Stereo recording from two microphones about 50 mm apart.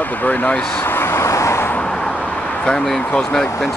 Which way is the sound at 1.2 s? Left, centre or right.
Left.